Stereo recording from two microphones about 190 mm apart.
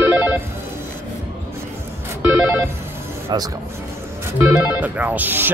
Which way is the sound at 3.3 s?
20° right (ahead or behind).